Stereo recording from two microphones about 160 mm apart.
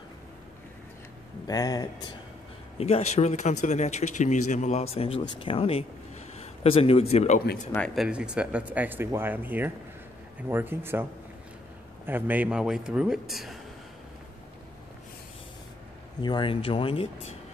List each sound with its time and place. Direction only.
1.5 s speech: 25° left (ahead or behind)
2.8 s a man's voice: 40° left (ahead or behind)
7.7 s speech: 5° left (ahead or behind); by 11.1 s 15° right (ahead or behind)
12.1 s a man's voice: 10° right (ahead or behind)
16.2 s speech: 30° left (ahead or behind)